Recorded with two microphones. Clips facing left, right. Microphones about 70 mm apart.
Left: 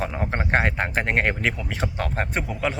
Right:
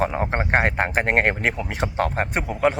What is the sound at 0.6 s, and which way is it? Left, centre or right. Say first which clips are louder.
Speech: right 3 dB; right.